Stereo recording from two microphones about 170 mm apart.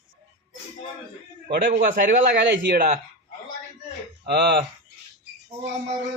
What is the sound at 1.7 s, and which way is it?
A man's voice, 70° right (ahead or behind).